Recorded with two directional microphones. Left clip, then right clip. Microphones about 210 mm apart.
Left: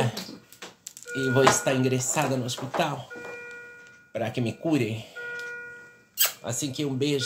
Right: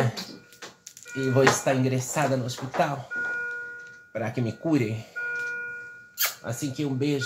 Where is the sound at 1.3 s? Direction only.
10° left (ahead or behind).